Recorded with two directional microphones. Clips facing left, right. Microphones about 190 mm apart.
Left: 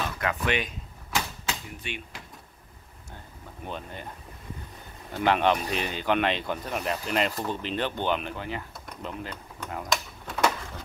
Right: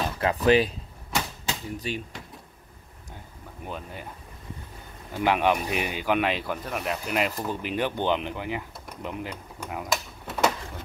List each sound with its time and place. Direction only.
0.0 s speech: 35° right (ahead or behind)
3.6 s speech: 5° right (ahead or behind)
5.1 s speech: 10° right (ahead or behind)